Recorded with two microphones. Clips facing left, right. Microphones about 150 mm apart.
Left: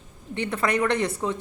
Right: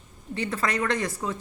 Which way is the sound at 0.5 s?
20° left (ahead or behind).